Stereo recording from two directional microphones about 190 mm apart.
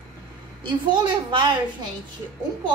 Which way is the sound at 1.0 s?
25° right (ahead or behind).